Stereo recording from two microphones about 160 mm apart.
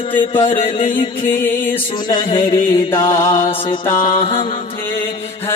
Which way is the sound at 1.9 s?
30° left (ahead or behind).